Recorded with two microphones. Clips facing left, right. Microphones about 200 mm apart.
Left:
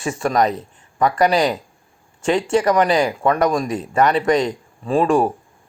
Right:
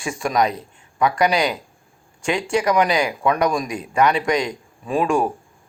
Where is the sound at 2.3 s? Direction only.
5° right (ahead or behind).